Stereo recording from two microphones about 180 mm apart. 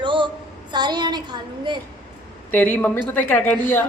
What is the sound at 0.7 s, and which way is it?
A woman's voice, 25° right (ahead or behind).